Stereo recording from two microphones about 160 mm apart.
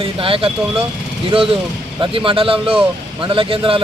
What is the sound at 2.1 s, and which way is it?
Speech, 35° right (ahead or behind).